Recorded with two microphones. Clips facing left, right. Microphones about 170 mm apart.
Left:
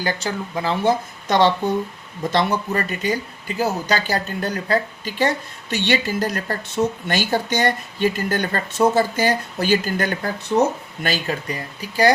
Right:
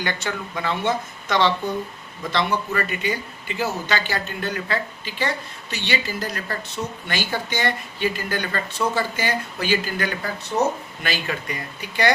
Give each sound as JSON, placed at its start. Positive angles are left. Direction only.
{"t": 0.0, "sound": "a woman's voice", "side_deg": 35}